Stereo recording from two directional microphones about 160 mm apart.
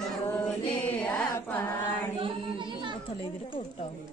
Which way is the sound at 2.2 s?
30° right (ahead or behind).